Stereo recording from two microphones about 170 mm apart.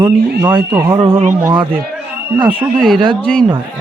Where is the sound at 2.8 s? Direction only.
5° left (ahead or behind).